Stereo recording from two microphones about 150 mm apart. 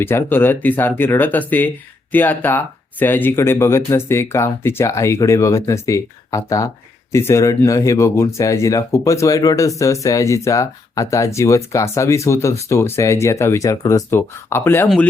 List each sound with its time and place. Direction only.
0.0 s speech: 15° left (ahead or behind)